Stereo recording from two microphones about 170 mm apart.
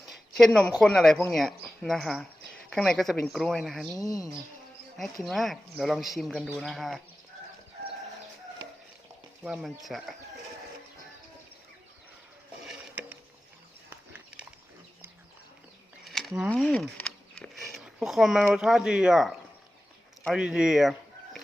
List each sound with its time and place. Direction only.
0.1 s a sound: centre (ahead or behind)
0.8 s speech: centre (ahead or behind)
4.0 s speech: 20° left (ahead or behind)
5.2 s speech: centre (ahead or behind)
9.4 s speech: 5° right (ahead or behind)
12.6 s a sound: 10° right (ahead or behind)
13.9 s dog: 10° right (ahead or behind)
16.0 s a sound: centre (ahead or behind)
16.5 s speech: 5° left (ahead or behind)